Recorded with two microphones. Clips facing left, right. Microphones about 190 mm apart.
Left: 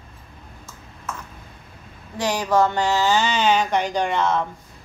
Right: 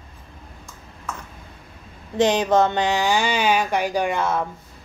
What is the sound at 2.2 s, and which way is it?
Speech, 20° right (ahead or behind).